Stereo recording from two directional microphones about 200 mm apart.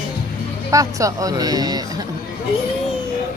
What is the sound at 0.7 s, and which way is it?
Speech, 15° right (ahead or behind).